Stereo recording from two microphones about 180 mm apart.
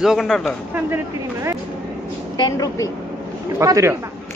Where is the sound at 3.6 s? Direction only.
15° right (ahead or behind).